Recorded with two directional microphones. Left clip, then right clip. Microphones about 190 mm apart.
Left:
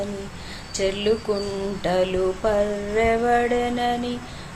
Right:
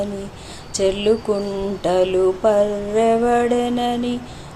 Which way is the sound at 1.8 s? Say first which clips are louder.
Right 5 dB; 20° right (ahead or behind).